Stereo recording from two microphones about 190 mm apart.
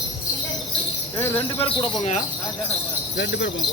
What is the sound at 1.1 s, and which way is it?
Jingle bell, 15° left (ahead or behind).